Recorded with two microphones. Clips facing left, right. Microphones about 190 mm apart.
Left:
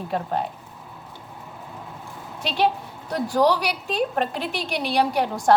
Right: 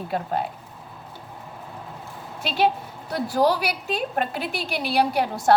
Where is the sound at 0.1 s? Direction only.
5° right (ahead or behind).